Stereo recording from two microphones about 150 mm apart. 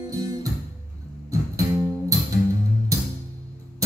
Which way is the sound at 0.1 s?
25° right (ahead or behind).